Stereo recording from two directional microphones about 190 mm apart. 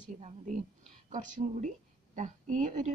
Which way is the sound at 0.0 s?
40° right (ahead or behind).